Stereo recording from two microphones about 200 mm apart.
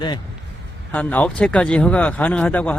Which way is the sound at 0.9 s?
10° left (ahead or behind).